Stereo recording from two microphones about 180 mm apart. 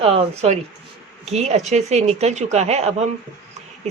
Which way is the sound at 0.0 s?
30° right (ahead or behind).